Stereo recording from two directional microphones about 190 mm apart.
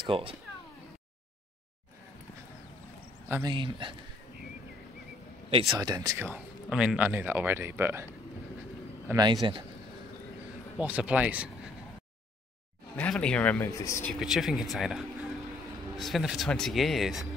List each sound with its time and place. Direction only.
0.0 s a man's voice: 30° right (ahead or behind)
3.4 s a man's voice: 25° right (ahead or behind)
5.7 s a man's voice: 20° right (ahead or behind)
10.8 s speech: 5° right (ahead or behind)
12.9 s speech: 5° left (ahead or behind)
14.2 s speech: centre (ahead or behind)